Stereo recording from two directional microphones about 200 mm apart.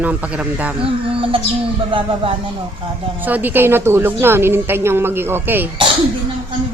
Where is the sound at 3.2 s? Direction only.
10° right (ahead or behind).